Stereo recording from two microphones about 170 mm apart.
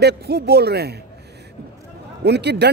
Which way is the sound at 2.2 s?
80° right.